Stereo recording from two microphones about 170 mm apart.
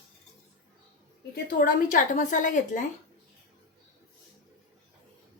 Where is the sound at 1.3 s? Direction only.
60° left (ahead or behind).